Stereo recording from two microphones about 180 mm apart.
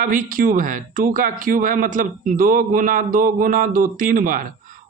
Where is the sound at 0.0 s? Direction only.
50° right (ahead or behind).